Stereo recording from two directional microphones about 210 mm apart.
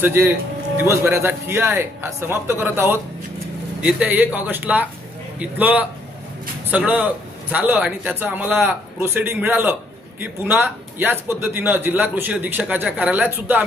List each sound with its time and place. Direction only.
0.0 s a man's voice: 10° right (ahead or behind)